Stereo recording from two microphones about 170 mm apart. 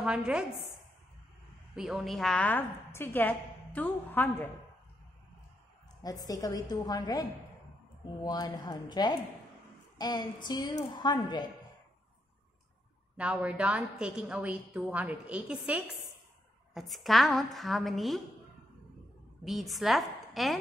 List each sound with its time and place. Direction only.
0.0 s a woman's voice: 5° right (ahead or behind)
1.8 s a woman's voice: 5° right (ahead or behind)
6.0 s a woman's voice: 20° left (ahead or behind)
13.2 s a woman's voice: 5° right (ahead or behind)
19.4 s a woman's voice: centre (ahead or behind)